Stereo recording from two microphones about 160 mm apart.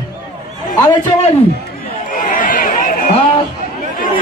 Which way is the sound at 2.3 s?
60° left (ahead or behind).